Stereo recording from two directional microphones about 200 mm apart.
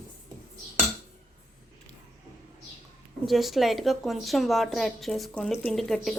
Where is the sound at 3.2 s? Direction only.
Centre (ahead or behind).